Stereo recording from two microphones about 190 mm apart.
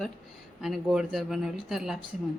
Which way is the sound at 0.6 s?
Centre (ahead or behind).